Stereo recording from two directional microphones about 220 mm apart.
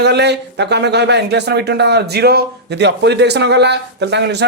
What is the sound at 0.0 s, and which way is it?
A man's voice, 50° right (ahead or behind).